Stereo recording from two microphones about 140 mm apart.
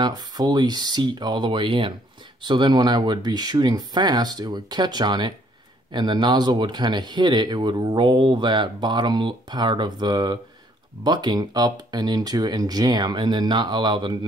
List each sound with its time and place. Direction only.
0.0 s speech: 30° right (ahead or behind)